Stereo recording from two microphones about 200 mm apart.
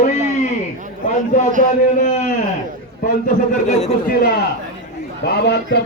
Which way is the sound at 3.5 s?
35° left (ahead or behind).